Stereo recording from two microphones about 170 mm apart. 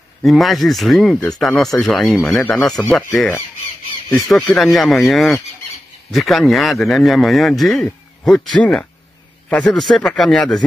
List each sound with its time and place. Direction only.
0.2 s speech: centre (ahead or behind)
4.1 s speech: centre (ahead or behind)